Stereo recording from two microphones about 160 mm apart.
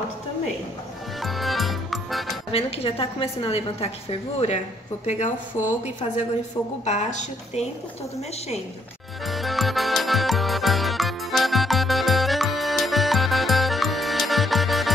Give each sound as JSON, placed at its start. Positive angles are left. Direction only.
{"t": 1.2, "sound": "music", "side_deg": 0}
{"t": 2.5, "sound": "a woman's voice", "side_deg": 35}
{"t": 6.8, "sound": "a woman's voice", "side_deg": 45}
{"t": 9.2, "sound": "music", "side_deg": 0}